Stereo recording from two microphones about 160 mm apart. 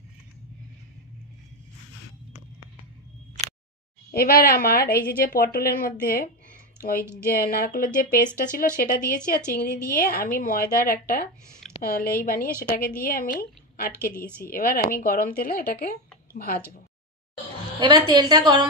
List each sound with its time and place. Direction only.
4.1 s a woman's voice: 70° left (ahead or behind)
17.7 s a woman's voice: 25° right (ahead or behind)